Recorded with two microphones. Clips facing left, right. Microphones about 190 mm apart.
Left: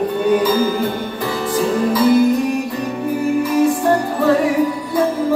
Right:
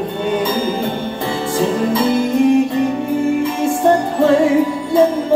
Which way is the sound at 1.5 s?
25° right (ahead or behind).